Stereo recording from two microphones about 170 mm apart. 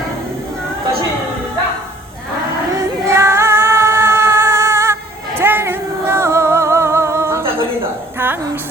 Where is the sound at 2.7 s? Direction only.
15° right (ahead or behind).